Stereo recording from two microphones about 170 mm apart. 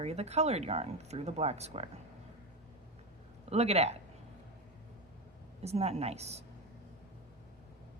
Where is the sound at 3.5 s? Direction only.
40° right (ahead or behind).